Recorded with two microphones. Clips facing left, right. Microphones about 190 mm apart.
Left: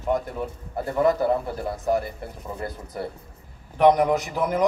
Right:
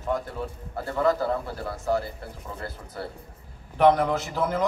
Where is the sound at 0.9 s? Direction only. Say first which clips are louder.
Left 3 dB; 20° left (ahead or behind).